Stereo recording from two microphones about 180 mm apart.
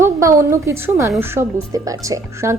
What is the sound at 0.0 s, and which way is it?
A woman's voice, 15° right (ahead or behind).